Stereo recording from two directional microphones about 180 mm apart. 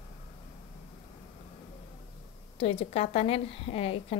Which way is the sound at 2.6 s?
35° left (ahead or behind).